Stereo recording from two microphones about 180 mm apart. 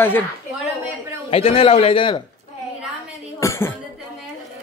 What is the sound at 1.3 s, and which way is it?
Speech, 35° left (ahead or behind).